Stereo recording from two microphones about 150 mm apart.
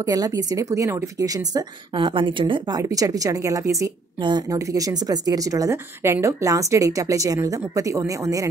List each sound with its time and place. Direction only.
0.0 s a woman's voice: 25° right (ahead or behind)